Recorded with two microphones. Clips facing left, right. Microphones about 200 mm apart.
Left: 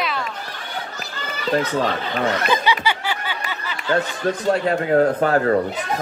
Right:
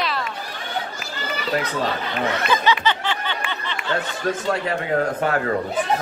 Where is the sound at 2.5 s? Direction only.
15° left (ahead or behind).